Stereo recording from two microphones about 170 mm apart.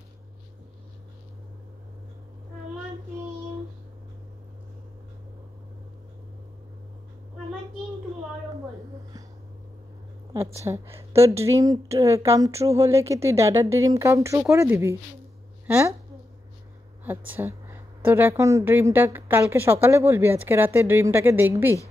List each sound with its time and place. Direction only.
10.3 s a woman's voice: 15° right (ahead or behind)
17.0 s a woman's voice: 10° right (ahead or behind)